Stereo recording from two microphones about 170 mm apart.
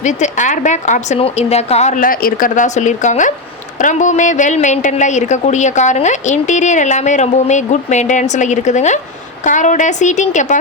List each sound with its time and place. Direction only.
0.0 s a woman's voice: 45° left (ahead or behind)